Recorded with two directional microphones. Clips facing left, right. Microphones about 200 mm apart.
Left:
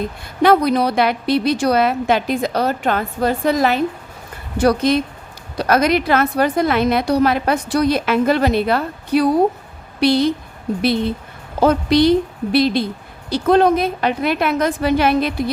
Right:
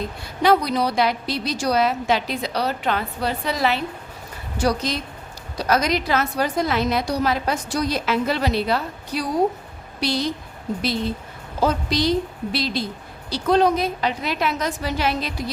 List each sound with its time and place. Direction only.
0.4 s a woman's voice: 55° left (ahead or behind)
11.6 s a woman's voice: 60° left (ahead or behind)